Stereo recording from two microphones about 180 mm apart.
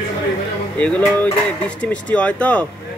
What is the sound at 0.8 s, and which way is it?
Speech, 10° left (ahead or behind).